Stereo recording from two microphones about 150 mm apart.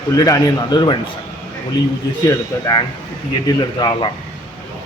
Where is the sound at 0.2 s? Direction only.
25° left (ahead or behind).